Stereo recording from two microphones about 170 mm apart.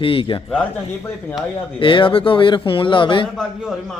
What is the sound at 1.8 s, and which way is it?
A man's voice, 30° left (ahead or behind).